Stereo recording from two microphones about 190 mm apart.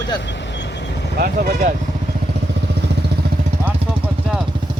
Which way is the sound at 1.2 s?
45° right (ahead or behind).